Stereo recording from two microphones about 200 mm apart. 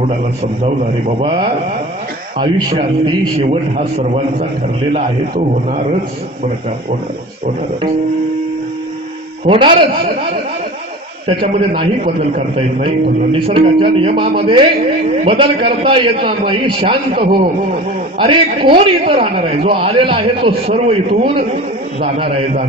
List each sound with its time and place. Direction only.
1.2 s a man's voice: 25° right (ahead or behind)
9.5 s a man's voice: 25° right (ahead or behind)
11.2 s a man's voice: 25° right (ahead or behind)